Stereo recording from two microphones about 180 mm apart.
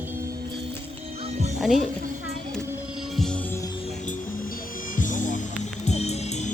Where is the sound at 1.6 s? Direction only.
Centre (ahead or behind).